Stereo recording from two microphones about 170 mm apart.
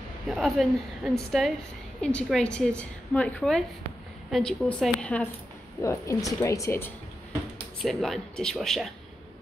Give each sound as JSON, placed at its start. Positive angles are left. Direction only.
{"t": 0.3, "sound": "a woman's voice", "side_deg": 0}
{"t": 5.8, "sound": "speech", "side_deg": 20}
{"t": 7.8, "sound": "a woman's voice", "side_deg": 0}